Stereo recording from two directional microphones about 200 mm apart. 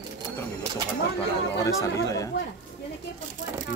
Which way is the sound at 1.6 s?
15° left (ahead or behind).